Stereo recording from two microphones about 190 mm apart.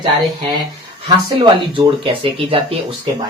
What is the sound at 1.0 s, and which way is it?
Speech, 25° right (ahead or behind).